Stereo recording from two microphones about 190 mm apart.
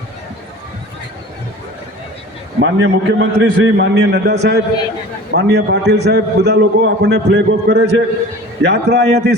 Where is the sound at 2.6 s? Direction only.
70° right (ahead or behind).